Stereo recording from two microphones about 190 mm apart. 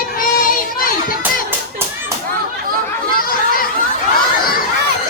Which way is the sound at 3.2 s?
50° left (ahead or behind).